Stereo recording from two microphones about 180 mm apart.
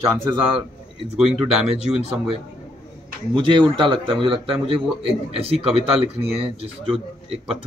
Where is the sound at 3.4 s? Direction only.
30° right (ahead or behind).